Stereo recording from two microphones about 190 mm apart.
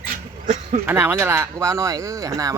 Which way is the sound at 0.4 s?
40° right (ahead or behind).